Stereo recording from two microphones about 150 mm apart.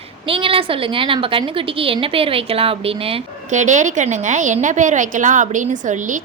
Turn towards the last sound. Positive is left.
turn(degrees=-55)  # may be behind; listen again after turning